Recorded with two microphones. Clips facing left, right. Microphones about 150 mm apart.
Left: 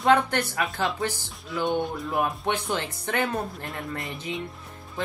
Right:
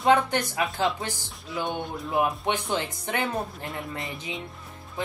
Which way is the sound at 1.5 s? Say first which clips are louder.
Left 4 dB; centre (ahead or behind).